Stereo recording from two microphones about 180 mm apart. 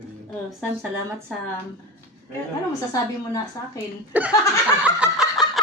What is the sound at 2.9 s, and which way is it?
Speech, 15° left (ahead or behind).